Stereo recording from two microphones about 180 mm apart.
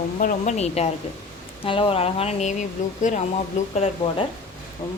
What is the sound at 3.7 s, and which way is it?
Speech, 35° left (ahead or behind).